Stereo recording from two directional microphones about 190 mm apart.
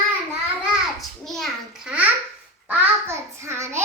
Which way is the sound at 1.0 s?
Centre (ahead or behind).